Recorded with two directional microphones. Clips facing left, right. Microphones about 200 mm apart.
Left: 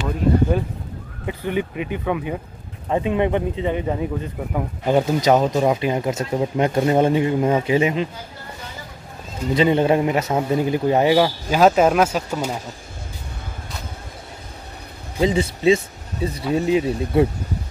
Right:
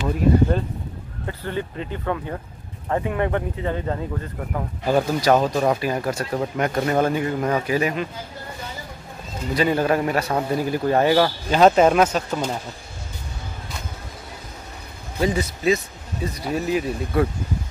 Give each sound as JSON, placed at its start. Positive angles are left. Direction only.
{"t": 1.2, "sound": "speech", "side_deg": 15}
{"t": 9.5, "sound": "speech", "side_deg": 25}
{"t": 15.1, "sound": "speech", "side_deg": 25}